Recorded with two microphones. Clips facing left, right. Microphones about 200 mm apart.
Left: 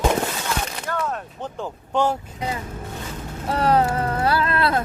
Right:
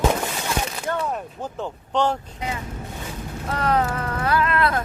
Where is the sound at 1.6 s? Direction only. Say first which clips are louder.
Left 1 dB; 10° left (ahead or behind).